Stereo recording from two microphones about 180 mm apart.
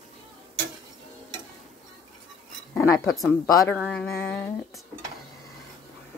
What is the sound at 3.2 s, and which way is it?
Speech, 15° left (ahead or behind).